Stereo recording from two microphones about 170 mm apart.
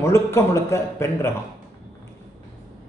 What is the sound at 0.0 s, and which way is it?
A man's voice, 15° left (ahead or behind).